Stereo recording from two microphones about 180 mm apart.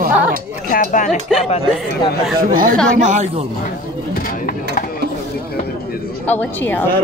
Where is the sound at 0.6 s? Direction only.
50° left (ahead or behind).